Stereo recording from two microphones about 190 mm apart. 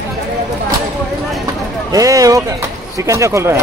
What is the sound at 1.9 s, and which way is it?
Speech, 20° right (ahead or behind).